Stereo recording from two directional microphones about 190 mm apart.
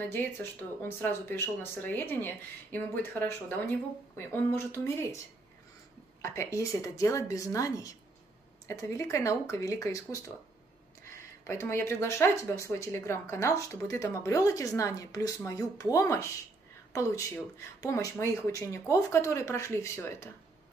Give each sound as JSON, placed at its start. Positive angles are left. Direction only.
{"t": 0.0, "sound": "speech", "side_deg": 10}
{"t": 6.2, "sound": "speech", "side_deg": 15}
{"t": 11.4, "sound": "speech", "side_deg": 15}